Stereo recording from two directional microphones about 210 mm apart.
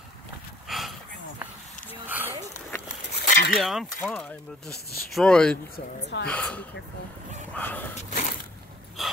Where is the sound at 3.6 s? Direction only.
Centre (ahead or behind).